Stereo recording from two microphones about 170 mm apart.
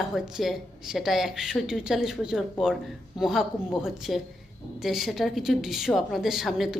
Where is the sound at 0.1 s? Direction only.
5° right (ahead or behind).